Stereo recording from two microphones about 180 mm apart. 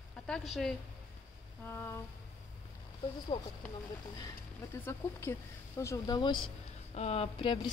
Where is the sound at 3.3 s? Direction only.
25° left (ahead or behind).